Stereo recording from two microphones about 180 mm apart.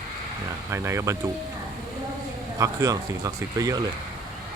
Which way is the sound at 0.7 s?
15° right (ahead or behind).